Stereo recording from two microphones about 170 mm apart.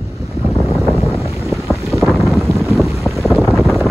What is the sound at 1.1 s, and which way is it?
Boat, 15° left (ahead or behind).